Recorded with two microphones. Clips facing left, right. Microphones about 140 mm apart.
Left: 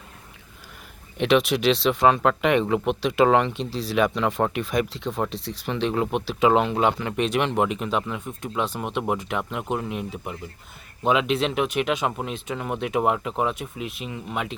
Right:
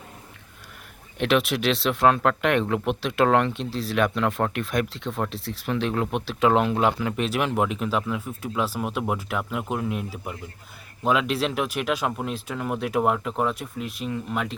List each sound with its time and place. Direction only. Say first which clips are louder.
1.2 s speech: left 2 dB; centre (ahead or behind)